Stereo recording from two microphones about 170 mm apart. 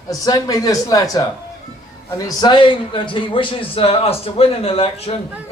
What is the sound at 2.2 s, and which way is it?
A man's voice, 25° left (ahead or behind).